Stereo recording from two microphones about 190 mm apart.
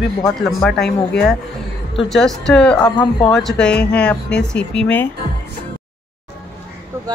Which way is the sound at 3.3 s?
5° left (ahead or behind).